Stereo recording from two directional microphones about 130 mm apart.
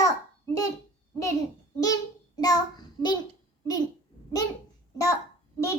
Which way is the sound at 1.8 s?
30° left (ahead or behind).